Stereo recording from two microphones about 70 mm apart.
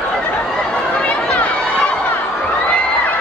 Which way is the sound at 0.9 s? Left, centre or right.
Centre.